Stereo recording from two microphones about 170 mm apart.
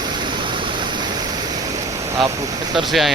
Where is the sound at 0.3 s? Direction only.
25° right (ahead or behind).